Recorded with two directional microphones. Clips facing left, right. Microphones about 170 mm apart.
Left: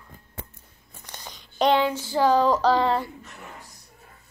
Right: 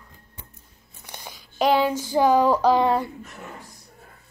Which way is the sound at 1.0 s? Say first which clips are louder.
Right 2 dB; 10° right (ahead or behind).